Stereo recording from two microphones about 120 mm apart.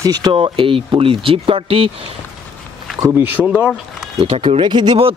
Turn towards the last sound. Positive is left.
turn(degrees=-45)  # may be behind; listen again after turning